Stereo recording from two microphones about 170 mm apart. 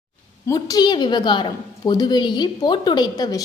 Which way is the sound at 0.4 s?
25° left (ahead or behind).